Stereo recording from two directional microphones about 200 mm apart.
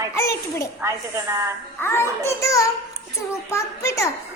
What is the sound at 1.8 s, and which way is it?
A child's voice, 10° left (ahead or behind).